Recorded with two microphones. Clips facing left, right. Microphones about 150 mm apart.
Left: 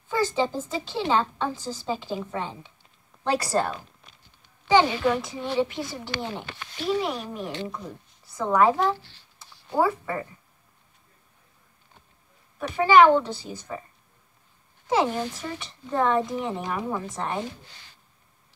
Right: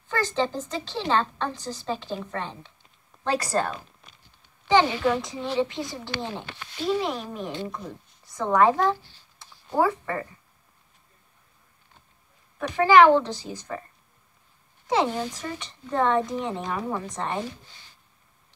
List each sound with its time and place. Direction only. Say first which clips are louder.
0.1 s a woman's voice: left 1 dB; 5° left (ahead or behind)
6.8 s speech: even; 20° right (ahead or behind)
7.6 s a woman's voice: even; centre (ahead or behind)
9.4 s a sound: even; 5° left (ahead or behind)
12.5 s a woman's voice: even; 5° left (ahead or behind)
14.9 s a woman's voice: even; 5° left (ahead or behind)